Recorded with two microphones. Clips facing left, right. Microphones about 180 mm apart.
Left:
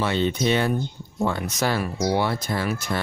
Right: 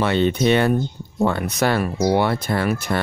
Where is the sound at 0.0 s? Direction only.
60° right (ahead or behind).